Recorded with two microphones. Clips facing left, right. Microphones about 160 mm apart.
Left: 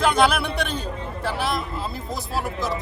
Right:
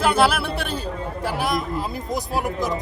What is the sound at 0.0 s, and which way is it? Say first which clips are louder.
Speech: even; 5° right (ahead or behind).